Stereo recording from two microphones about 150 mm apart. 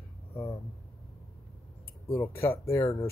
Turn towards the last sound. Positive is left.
turn(degrees=15)  # may be behind; listen again after turning